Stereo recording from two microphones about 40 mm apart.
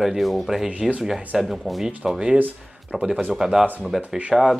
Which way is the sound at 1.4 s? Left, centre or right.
Centre.